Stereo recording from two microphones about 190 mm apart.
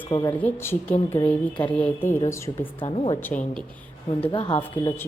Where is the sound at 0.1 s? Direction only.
25° left (ahead or behind).